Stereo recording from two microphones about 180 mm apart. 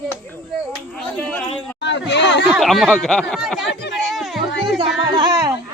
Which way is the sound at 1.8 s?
80° left.